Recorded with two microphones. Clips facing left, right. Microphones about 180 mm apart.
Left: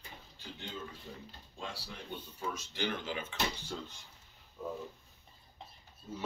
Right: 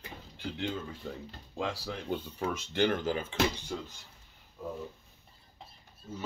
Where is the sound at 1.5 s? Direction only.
85° right.